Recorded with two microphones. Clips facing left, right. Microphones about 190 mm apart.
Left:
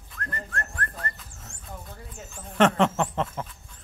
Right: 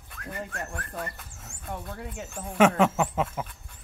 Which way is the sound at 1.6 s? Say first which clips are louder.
Right 7 dB; 70° right (ahead or behind).